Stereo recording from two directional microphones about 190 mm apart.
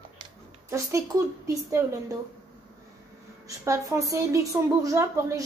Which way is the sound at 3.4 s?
15° right (ahead or behind).